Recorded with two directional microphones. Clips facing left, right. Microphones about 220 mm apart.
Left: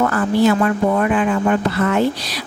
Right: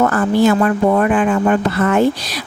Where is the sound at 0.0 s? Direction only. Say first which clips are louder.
Right 2 dB; 45° right (ahead or behind).